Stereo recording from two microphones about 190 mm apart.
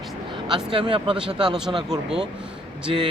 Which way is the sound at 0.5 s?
25° right (ahead or behind).